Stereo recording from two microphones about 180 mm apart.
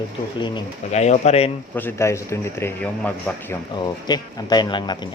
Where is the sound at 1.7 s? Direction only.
15° left (ahead or behind).